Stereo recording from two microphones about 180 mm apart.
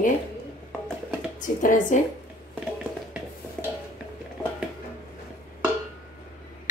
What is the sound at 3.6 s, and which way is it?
Stir, 5° left (ahead or behind).